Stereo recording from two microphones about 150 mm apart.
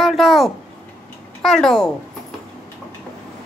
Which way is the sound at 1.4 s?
5° left (ahead or behind).